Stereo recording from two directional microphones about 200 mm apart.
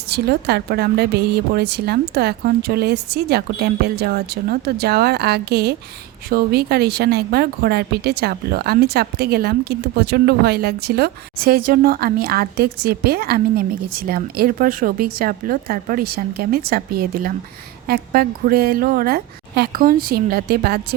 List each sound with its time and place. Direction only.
0.1 s speech: 55° right (ahead or behind)